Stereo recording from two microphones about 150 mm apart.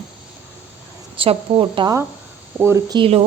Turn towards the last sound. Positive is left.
turn(degrees=-40)  # may be behind; listen again after turning